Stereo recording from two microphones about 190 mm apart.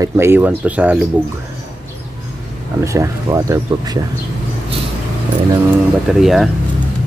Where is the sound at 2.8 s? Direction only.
15° right (ahead or behind).